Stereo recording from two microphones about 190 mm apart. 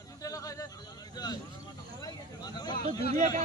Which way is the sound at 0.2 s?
15° left (ahead or behind).